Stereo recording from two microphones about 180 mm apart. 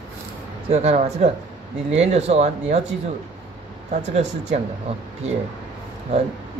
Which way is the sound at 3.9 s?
40° right (ahead or behind).